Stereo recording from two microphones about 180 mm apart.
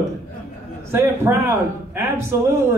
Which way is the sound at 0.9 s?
15° right (ahead or behind).